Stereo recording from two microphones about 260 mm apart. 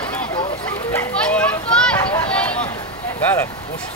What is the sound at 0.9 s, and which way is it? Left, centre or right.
Children playing, centre.